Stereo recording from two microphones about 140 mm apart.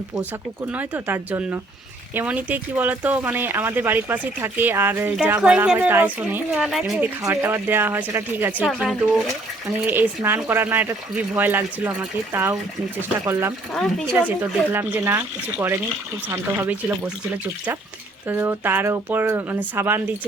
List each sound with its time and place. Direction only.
0.7 s speech: 10° right (ahead or behind)
7.0 s speech: 20° right (ahead or behind)
18.3 s speech: 15° right (ahead or behind)